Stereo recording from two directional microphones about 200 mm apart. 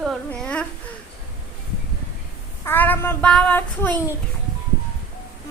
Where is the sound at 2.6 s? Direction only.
10° left (ahead or behind).